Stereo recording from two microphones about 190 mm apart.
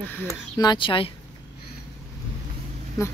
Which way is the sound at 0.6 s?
25° left (ahead or behind).